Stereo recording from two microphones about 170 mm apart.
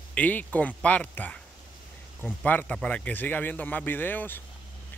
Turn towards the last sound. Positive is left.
turn(degrees=10)  # may be behind; listen again after turning